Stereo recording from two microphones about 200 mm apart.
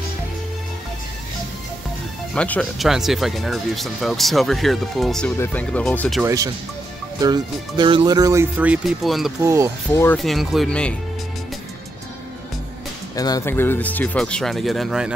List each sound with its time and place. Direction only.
2.3 s speech: 5° left (ahead or behind)
6.2 s speech: 15° right (ahead or behind); by 9.3 s centre (ahead or behind)
9.4 s speech: 15° right (ahead or behind)
9.8 s speech: 15° left (ahead or behind)
10.1 s speech: centre (ahead or behind)
13.1 s speech: 20° left (ahead or behind); by 15.1 s centre (ahead or behind)